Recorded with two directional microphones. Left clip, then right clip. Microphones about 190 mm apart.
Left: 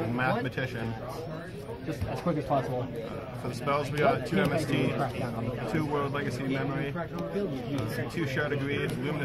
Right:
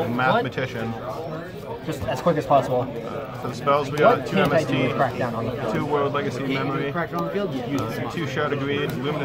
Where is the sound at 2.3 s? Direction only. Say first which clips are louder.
Right 10 dB; 50° right (ahead or behind).